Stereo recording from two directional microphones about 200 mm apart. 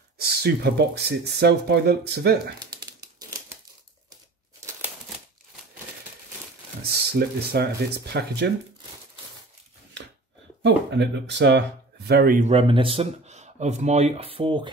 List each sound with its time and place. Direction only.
0.2 s speech: 50° right (ahead or behind)
6.8 s speech: 50° right (ahead or behind)
10.6 s speech: 60° right (ahead or behind); by 14.7 s 25° right (ahead or behind)